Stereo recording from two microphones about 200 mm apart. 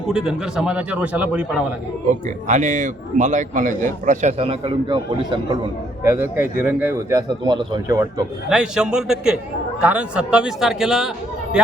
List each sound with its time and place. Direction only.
0.1 s a man's voice: 5° right (ahead or behind)
2.2 s a man's voice: 40° right (ahead or behind); by 5.5 s 25° right (ahead or behind)
6.1 s speech: 10° right (ahead or behind)
8.4 s a man's voice: 5° right (ahead or behind)